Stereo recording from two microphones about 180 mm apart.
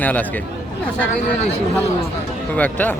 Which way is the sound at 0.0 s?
10° left (ahead or behind).